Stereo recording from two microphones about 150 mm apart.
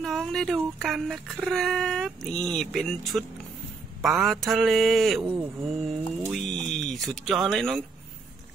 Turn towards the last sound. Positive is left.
turn(degrees=0)  # may be behind; listen again after turning